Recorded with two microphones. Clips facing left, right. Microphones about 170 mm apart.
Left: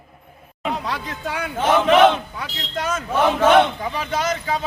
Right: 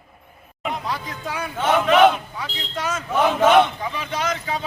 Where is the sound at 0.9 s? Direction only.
65° left (ahead or behind).